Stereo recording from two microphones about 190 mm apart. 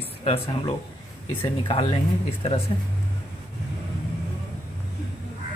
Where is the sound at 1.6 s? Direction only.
25° left (ahead or behind).